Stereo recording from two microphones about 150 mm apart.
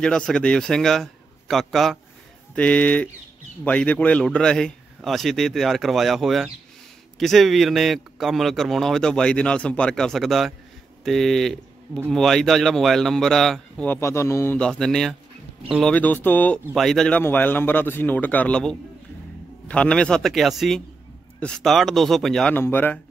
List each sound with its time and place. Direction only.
0.0 s a man's voice: 5° left (ahead or behind)
13.8 s a man's voice: 15° left (ahead or behind)
14.6 s a man's voice: 5° left (ahead or behind)